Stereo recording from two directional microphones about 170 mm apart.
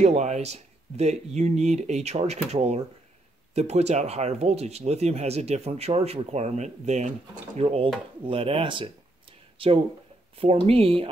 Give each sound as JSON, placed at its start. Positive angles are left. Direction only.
{"t": 0.0, "sound": "speech", "side_deg": -40}
{"t": 10.3, "sound": "speech", "side_deg": -35}